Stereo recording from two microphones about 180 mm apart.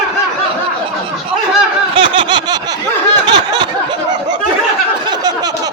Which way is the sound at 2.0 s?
25° right (ahead or behind).